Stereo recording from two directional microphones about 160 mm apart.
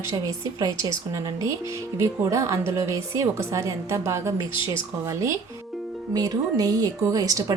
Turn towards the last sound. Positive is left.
turn(degrees=-20)  # may be behind; listen again after turning